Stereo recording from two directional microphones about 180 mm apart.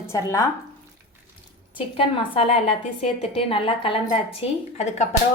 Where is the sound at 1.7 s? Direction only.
30° left (ahead or behind).